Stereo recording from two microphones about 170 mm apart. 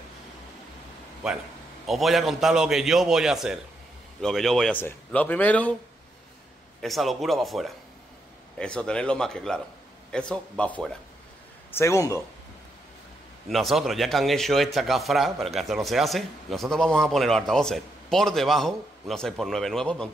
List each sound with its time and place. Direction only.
1.9 s a man's voice: centre (ahead or behind)
6.8 s speech: centre (ahead or behind)
11.7 s a man's voice: 15° left (ahead or behind)
13.5 s speech: centre (ahead or behind)